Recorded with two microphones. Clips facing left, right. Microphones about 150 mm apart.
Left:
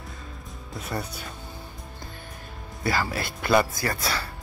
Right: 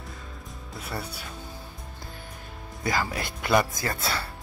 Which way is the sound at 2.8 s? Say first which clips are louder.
Left 1 dB; 15° right (ahead or behind).